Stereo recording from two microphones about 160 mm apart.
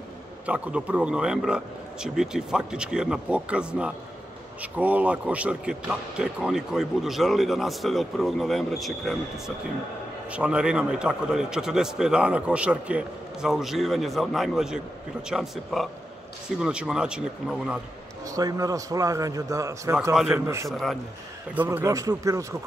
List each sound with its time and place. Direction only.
0.5 s speech: 10° right (ahead or behind)
10.3 s speech: 5° right (ahead or behind)
18.2 s a man's voice: 20° right (ahead or behind)
20.7 s speech: centre (ahead or behind)
21.5 s a man's voice: 15° right (ahead or behind)